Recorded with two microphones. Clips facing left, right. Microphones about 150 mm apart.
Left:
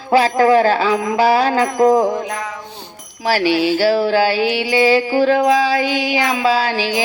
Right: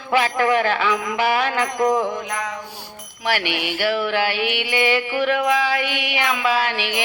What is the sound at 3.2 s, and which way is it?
Music, 35° left (ahead or behind).